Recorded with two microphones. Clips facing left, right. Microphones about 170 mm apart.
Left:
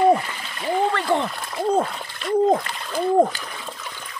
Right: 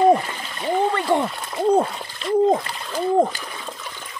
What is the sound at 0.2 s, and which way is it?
Splash, 30° right (ahead or behind).